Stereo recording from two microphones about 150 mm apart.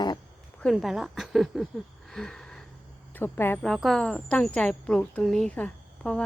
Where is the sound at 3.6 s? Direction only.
Centre (ahead or behind).